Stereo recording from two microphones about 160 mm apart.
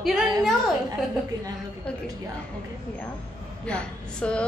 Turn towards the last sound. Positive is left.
turn(degrees=5)  # may be behind; listen again after turning